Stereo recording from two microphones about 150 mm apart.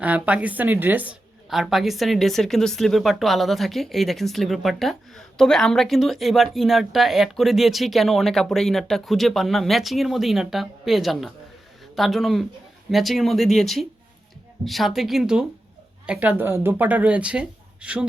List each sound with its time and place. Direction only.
0.0 s a woman's voice: 10° right (ahead or behind)